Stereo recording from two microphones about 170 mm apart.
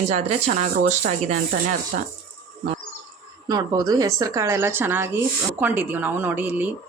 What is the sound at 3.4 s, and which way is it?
Speech, 20° right (ahead or behind).